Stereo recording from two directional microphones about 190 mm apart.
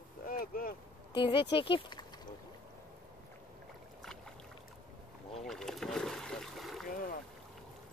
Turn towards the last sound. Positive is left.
turn(degrees=45)  # may be behind; listen again after turning